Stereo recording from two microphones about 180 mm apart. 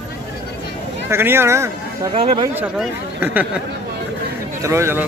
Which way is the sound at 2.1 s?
30° right (ahead or behind).